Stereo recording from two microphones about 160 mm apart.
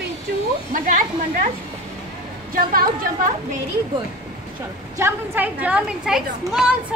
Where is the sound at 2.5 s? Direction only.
60° right (ahead or behind).